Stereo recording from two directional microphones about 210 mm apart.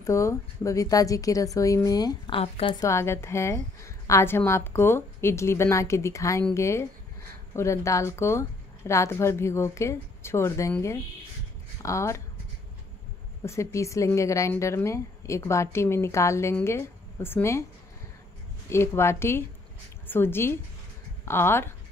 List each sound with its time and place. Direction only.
0.0 s speech: 15° left (ahead or behind)
13.4 s speech: 15° left (ahead or behind)
18.7 s speech: 10° left (ahead or behind)